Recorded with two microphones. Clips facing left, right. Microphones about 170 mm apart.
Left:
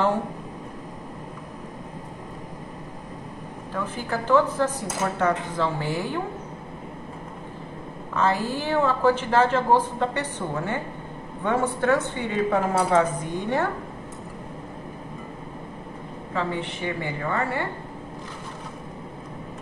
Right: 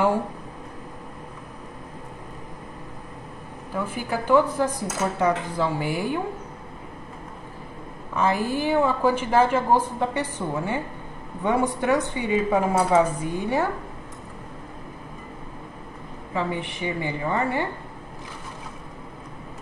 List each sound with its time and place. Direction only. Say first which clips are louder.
3.7 s a woman's voice: right 1 dB; 10° right (ahead or behind)
8.1 s a woman's voice: right 1 dB; 15° right (ahead or behind)
16.3 s a woman's voice: right 1 dB; 15° right (ahead or behind)